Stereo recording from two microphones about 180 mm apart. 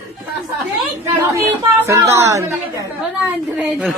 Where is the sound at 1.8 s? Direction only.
15° right (ahead or behind).